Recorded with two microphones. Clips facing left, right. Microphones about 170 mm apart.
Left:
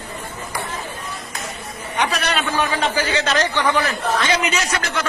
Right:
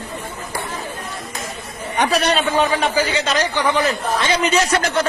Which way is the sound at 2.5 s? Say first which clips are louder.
Right 3 dB; 15° right (ahead or behind).